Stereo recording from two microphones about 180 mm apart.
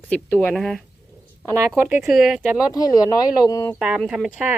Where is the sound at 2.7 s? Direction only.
20° left (ahead or behind).